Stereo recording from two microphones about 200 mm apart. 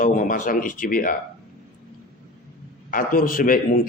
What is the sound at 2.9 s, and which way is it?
Speech, 45° left (ahead or behind).